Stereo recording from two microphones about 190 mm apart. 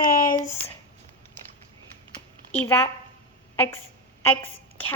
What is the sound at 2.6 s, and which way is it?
Speech, 10° left (ahead or behind).